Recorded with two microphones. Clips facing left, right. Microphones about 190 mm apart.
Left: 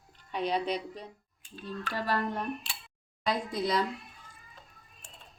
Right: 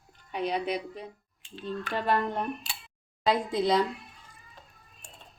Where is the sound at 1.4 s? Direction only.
25° right (ahead or behind).